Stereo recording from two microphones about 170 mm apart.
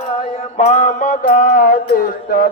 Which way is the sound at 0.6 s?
45° left (ahead or behind).